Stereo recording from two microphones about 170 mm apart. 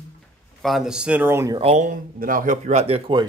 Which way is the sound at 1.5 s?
40° right (ahead or behind).